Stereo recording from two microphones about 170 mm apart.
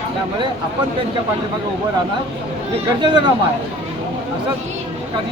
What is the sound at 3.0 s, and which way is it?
Speech, 25° right (ahead or behind).